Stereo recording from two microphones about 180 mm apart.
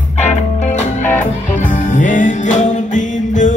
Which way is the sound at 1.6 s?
45° left (ahead or behind).